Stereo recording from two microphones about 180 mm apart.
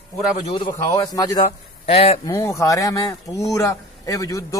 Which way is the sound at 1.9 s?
35° left (ahead or behind).